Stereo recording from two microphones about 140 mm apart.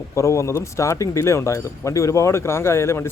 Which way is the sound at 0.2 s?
20° left (ahead or behind).